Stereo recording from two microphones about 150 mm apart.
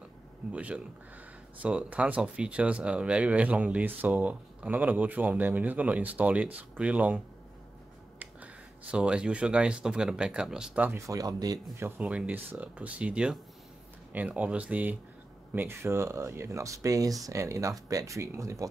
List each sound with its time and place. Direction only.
0.5 s speech: 10° right (ahead or behind)
8.9 s speech: 5° right (ahead or behind)
12.0 s speech: 5° right (ahead or behind)